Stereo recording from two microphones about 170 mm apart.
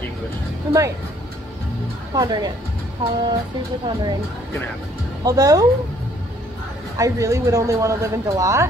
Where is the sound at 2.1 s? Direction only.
25° right (ahead or behind).